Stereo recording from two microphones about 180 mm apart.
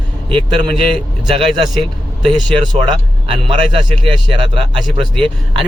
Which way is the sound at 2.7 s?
30° right (ahead or behind).